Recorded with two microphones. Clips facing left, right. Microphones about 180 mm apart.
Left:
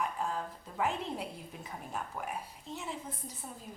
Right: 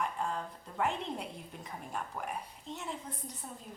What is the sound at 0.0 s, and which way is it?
A woman's voice, 5° left (ahead or behind).